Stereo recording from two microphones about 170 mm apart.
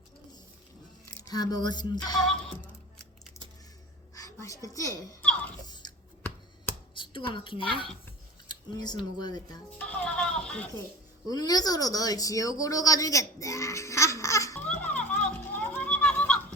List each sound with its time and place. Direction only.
1.0 s speech: 20° left (ahead or behind)
4.1 s a sound: 20° left (ahead or behind)
5.2 s giggle: 10° left (ahead or behind)
5.6 s chewing: 25° left (ahead or behind)
6.9 s a woman's voice: 30° left (ahead or behind)
8.4 s scissors: 25° left (ahead or behind)
9.1 s speech: 25° left (ahead or behind)
9.7 s speech: 5° left (ahead or behind)
11.3 s speech: 20° left (ahead or behind)
14.7 s children playing: 5° left (ahead or behind)